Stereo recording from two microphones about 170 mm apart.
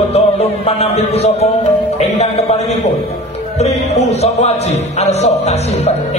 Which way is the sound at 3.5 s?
40° left (ahead or behind).